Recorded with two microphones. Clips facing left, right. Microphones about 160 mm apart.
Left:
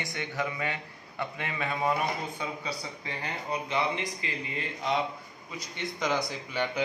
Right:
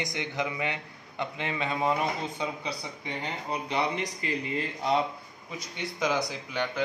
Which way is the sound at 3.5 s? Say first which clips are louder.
Even; 40° right (ahead or behind).